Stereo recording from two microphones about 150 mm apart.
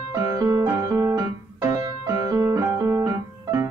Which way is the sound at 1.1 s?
25° right (ahead or behind).